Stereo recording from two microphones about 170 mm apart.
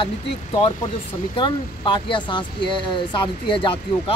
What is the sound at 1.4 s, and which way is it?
Speech, 30° left (ahead or behind).